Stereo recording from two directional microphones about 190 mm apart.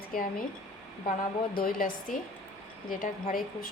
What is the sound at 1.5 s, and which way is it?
A woman's voice, 50° left (ahead or behind).